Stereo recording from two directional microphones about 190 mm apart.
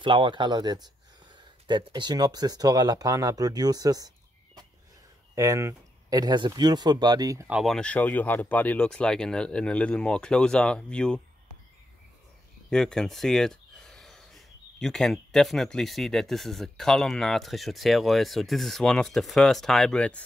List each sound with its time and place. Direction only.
0.0 s speech: 25° right (ahead or behind)
5.3 s speech: 15° right (ahead or behind)
7.5 s speech: centre (ahead or behind)
12.6 s speech: 5° left (ahead or behind)